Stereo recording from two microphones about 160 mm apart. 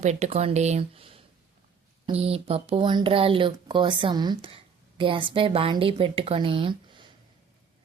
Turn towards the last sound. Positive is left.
turn(degrees=-30)  # may be behind; listen again after turning